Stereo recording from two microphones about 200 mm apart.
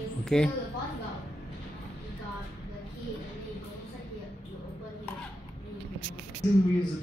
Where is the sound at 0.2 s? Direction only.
5° left (ahead or behind).